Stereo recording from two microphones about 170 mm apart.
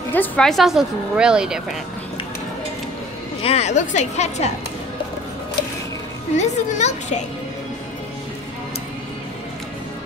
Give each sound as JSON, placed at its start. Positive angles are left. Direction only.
{"t": 0.1, "sound": "speech", "side_deg": 5}
{"t": 3.4, "sound": "a woman's voice", "side_deg": 40}
{"t": 6.3, "sound": "a child's voice", "side_deg": 45}